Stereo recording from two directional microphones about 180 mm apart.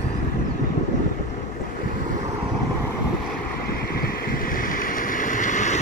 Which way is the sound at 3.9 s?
55° left (ahead or behind).